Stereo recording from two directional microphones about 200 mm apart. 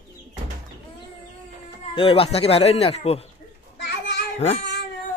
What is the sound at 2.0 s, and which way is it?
Speech, 30° left (ahead or behind).